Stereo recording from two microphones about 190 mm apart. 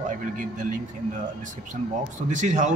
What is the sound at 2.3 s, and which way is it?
Speech, 40° right (ahead or behind).